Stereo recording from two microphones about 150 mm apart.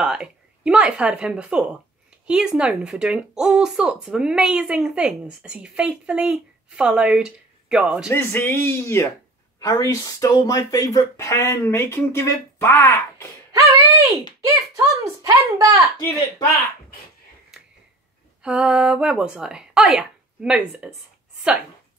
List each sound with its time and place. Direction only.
0.0 s speech: 5° right (ahead or behind)
8.1 s speech: 15° left (ahead or behind)
13.5 s a sound: 25° right (ahead or behind)
14.4 s a child's voice: 25° right (ahead or behind)
18.4 s speech: 5° right (ahead or behind)